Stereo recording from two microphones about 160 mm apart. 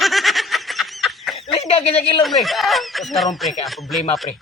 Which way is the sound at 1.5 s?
40° left (ahead or behind).